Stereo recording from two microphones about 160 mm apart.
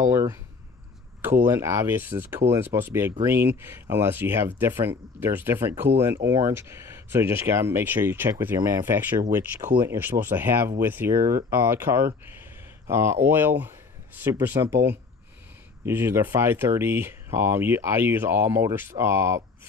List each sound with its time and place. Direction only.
0.1 s speech: 15° right (ahead or behind)
15.8 s speech: 15° right (ahead or behind)